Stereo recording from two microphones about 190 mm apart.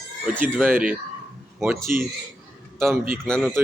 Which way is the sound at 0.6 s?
10° right (ahead or behind).